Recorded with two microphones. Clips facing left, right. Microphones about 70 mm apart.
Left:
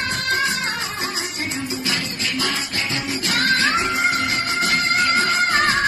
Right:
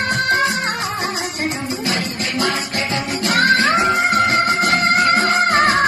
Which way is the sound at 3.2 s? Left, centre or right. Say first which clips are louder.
Right 5 dB; right.